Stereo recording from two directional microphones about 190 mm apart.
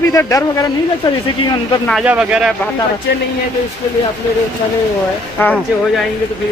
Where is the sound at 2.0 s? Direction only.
5° right (ahead or behind).